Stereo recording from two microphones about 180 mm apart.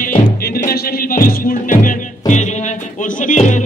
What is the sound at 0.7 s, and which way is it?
Music, 55° left (ahead or behind).